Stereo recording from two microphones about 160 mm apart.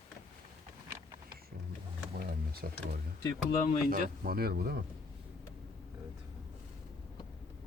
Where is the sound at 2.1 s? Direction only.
70° right (ahead or behind).